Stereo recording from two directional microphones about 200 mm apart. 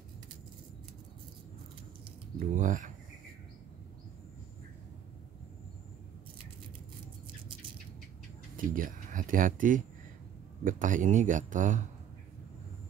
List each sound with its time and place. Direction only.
2.3 s speech: 40° right (ahead or behind)
8.5 s speech: 45° right (ahead or behind)